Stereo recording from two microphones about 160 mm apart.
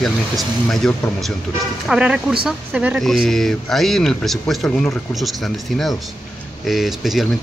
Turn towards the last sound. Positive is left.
turn(degrees=0)  # may be behind; listen again after turning